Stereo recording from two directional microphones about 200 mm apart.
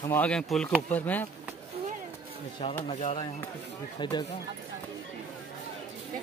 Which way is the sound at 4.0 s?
20° left (ahead or behind).